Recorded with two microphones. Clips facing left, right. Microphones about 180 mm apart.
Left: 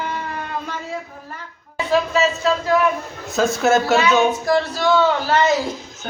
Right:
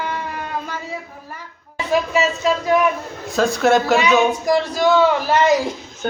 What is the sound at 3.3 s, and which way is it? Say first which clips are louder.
Speech: right 1 dB; centre (ahead or behind).